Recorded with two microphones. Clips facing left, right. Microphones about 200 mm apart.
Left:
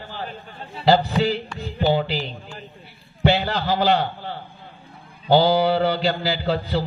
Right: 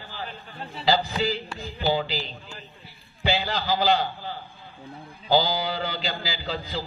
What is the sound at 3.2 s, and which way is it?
A man's voice, 60° left (ahead or behind).